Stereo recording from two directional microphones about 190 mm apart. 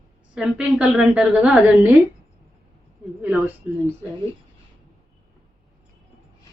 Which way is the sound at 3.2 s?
10° right (ahead or behind).